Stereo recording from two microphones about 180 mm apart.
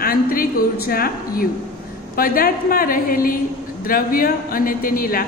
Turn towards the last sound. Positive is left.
turn(degrees=55)  # may be behind; listen again after turning